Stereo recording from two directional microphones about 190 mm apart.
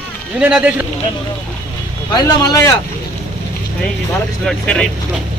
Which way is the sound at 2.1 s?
20° left (ahead or behind).